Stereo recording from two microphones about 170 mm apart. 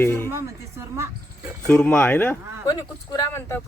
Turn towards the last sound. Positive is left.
turn(degrees=20)  # may be behind; listen again after turning